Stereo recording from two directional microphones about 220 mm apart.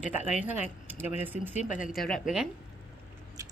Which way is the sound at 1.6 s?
35° left (ahead or behind).